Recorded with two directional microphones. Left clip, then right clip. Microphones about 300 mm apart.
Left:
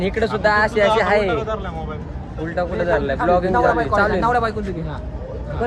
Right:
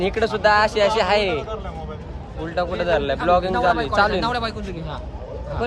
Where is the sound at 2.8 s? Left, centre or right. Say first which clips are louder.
Left 2 dB; centre.